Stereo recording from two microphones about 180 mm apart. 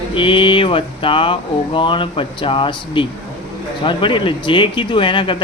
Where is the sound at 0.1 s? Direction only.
30° left (ahead or behind).